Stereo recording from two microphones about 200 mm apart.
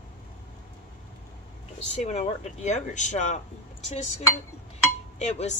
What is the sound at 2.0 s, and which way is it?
Speech, 35° left (ahead or behind).